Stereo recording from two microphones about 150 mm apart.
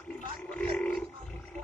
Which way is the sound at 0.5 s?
10° left (ahead or behind).